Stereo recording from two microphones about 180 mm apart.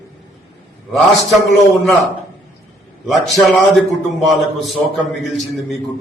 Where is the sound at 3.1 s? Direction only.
Centre (ahead or behind).